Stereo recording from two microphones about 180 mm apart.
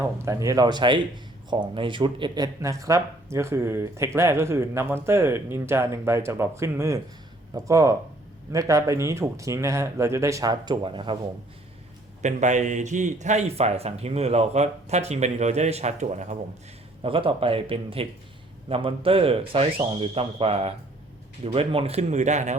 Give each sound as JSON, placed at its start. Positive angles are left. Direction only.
{"t": 0.0, "sound": "speech", "side_deg": -15}
{"t": 12.2, "sound": "a man's voice", "side_deg": -45}